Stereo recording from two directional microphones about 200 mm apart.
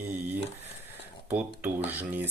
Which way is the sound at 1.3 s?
10° right (ahead or behind).